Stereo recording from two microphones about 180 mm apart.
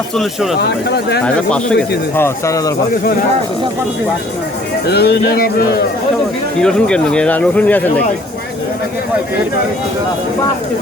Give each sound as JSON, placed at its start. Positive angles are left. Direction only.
{"t": 0.2, "sound": "speech", "side_deg": 0}
{"t": 0.9, "sound": "speech", "side_deg": 65}
{"t": 1.2, "sound": "speech", "side_deg": 5}
{"t": 4.9, "sound": "speech", "side_deg": 65}
{"t": 6.6, "sound": "speech", "side_deg": 5}